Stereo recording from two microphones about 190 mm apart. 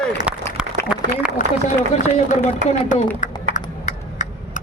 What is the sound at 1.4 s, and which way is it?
Speech, 35° left (ahead or behind).